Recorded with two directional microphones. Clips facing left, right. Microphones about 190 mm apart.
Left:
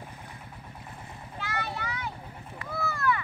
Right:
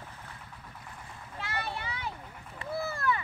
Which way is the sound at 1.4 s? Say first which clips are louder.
Left 2 dB; 30° right (ahead or behind).